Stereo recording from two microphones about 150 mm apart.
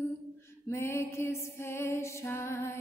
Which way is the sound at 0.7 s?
20° left (ahead or behind).